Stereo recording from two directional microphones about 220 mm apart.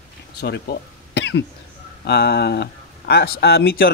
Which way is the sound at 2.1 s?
45° left (ahead or behind).